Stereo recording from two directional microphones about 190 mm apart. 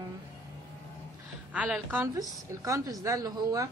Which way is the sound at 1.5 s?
5° right (ahead or behind).